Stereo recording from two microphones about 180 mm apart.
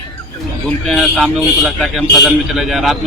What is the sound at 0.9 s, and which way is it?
A man's voice, centre (ahead or behind).